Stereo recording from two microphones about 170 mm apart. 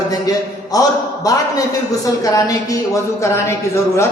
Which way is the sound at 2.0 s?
20° left (ahead or behind).